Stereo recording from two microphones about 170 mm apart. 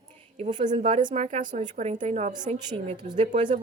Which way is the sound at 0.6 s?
40° right (ahead or behind).